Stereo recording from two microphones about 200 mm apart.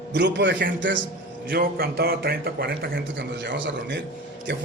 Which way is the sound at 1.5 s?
50° right (ahead or behind).